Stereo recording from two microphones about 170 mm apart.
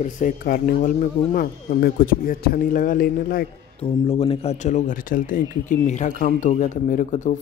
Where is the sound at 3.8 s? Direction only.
35° left (ahead or behind).